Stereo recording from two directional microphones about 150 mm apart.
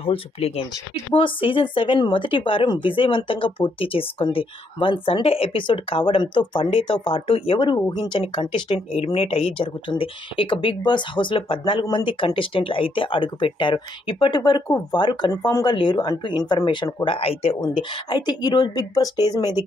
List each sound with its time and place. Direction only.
0.0 s speech: 40° left (ahead or behind)